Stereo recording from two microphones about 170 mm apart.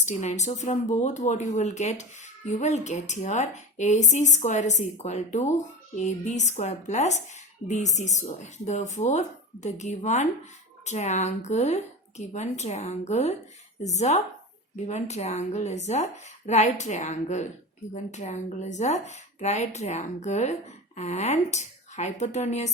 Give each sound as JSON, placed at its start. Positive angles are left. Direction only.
{"t": 0.0, "sound": "a woman's voice", "side_deg": 45}